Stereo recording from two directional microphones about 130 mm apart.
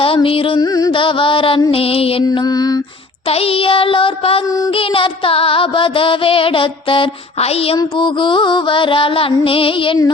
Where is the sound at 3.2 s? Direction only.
45° left (ahead or behind).